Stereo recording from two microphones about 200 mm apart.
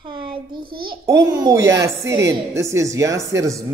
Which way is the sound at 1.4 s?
15° right (ahead or behind).